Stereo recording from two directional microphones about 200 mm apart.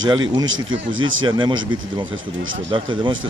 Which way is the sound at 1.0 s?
25° right (ahead or behind).